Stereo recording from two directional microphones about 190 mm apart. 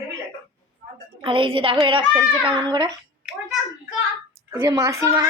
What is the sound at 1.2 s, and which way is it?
A woman's voice, 25° right (ahead or behind).